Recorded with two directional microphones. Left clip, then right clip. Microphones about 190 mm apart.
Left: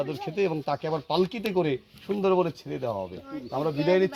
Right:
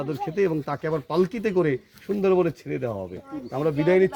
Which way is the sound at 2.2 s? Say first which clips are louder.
Right 3 dB; 90° right.